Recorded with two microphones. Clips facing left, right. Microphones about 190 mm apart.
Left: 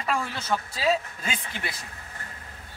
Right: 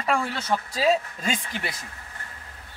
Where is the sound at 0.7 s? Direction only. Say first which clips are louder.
Right 4 dB; 40° right (ahead or behind).